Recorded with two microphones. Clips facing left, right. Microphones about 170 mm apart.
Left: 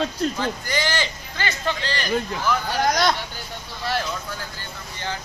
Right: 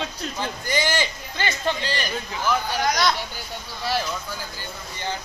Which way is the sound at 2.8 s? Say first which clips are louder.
Left 2 dB; 50° left (ahead or behind).